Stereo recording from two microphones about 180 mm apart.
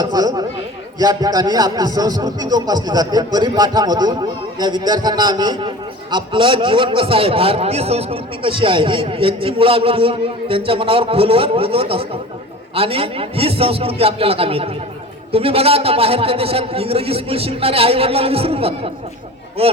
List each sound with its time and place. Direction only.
0.0 s speech: 20° right (ahead or behind)